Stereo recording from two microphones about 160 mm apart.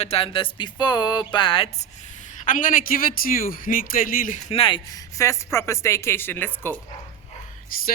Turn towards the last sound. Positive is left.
turn(degrees=65)  # may be behind; listen again after turning